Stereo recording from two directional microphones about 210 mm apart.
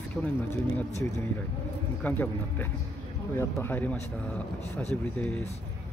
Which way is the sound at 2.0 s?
10° left (ahead or behind).